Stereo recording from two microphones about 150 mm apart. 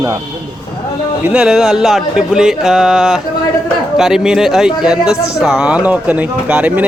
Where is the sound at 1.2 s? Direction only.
5° right (ahead or behind).